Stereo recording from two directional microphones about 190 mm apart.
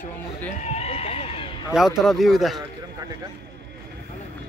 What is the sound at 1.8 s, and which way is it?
Speech, centre (ahead or behind).